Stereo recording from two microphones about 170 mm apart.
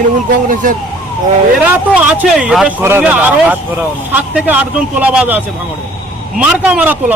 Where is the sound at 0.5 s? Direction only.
50° right (ahead or behind).